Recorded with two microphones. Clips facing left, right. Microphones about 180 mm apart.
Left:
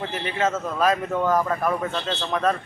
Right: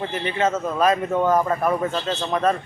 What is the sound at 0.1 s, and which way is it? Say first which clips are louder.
Speech: right 2 dB; centre (ahead or behind).